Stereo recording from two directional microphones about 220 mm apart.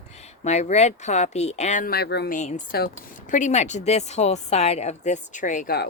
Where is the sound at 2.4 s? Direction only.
35° left (ahead or behind).